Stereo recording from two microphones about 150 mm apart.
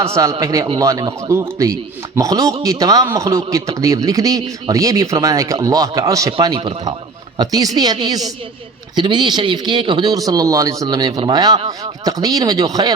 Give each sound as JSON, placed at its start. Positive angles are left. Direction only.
{"t": 0.0, "sound": "speech", "side_deg": -20}